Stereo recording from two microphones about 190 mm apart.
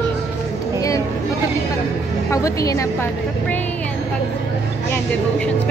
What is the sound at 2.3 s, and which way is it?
Speech, 15° left (ahead or behind).